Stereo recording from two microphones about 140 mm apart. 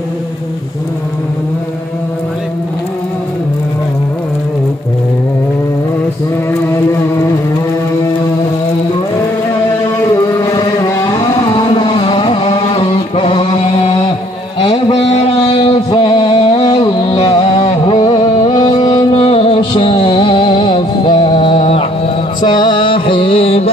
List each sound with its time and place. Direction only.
10.0 s carnatic music: 25° left (ahead or behind); by 14.1 s 40° left (ahead or behind)
14.6 s a sound: 50° left (ahead or behind)
16.3 s music: 50° left (ahead or behind)